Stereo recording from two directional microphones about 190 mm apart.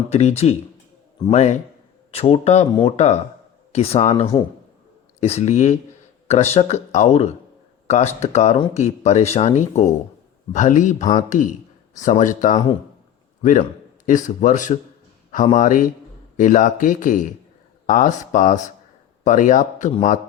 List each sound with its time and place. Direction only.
0.1 s speech: 35° left (ahead or behind)